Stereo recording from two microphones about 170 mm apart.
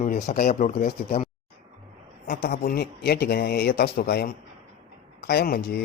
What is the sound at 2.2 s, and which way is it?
Speech, 60° left (ahead or behind).